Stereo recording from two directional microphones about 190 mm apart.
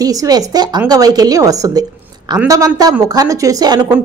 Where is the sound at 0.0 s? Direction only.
20° right (ahead or behind).